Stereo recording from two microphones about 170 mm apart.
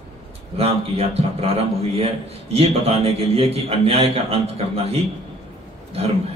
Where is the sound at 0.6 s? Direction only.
35° right (ahead or behind).